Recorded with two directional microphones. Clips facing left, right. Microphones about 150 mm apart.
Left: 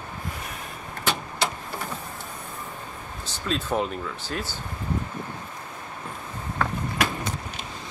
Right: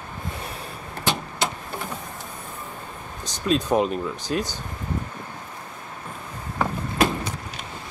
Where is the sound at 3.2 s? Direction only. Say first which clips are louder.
Right 6 dB; 15° right (ahead or behind).